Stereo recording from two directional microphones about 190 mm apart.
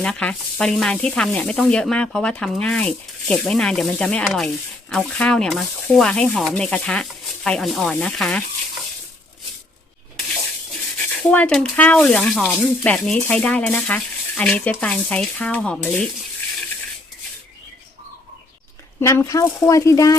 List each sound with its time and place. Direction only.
0.0 s sizzle: 5° left (ahead or behind)
10.9 s speech: 5° left (ahead or behind)
18.9 s speech: 15° left (ahead or behind)